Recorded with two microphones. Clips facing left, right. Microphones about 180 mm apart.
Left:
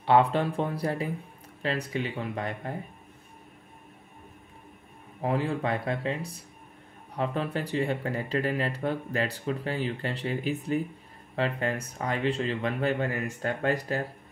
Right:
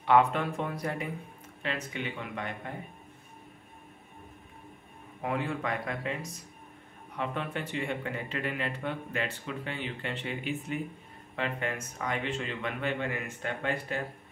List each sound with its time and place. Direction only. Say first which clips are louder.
0.0 s speech: left 2 dB; 30° left (ahead or behind)
5.2 s speech: left 4 dB; 30° left (ahead or behind)